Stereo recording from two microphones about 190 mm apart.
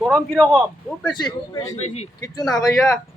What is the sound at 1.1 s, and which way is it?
Speech, 20° left (ahead or behind).